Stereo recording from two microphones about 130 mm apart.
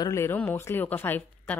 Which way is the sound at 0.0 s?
20° left (ahead or behind).